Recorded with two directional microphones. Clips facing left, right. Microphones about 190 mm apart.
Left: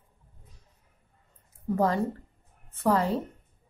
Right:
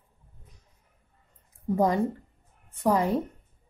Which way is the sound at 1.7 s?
15° right (ahead or behind).